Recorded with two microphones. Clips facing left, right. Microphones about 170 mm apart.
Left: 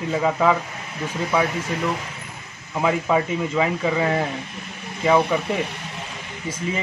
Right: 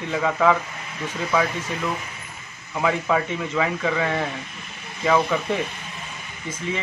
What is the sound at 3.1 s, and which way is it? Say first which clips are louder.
Speech: left 2 dB; 20° left (ahead or behind).